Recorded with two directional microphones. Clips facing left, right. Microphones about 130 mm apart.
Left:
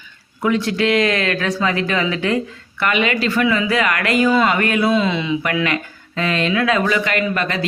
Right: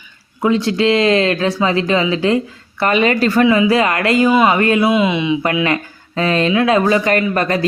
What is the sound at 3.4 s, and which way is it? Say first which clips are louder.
Speech: right 6 dB; 25° right (ahead or behind).